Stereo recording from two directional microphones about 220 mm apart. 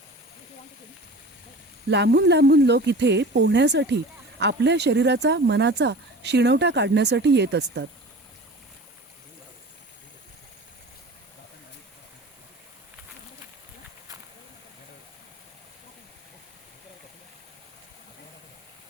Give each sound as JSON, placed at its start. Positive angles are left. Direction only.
{"t": 1.9, "sound": "speech", "side_deg": -50}